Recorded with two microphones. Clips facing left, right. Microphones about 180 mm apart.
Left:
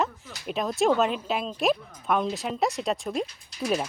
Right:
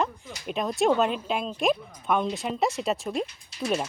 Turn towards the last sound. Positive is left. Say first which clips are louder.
# left 1 dB
turn(degrees=0)  # may be behind; listen again after turning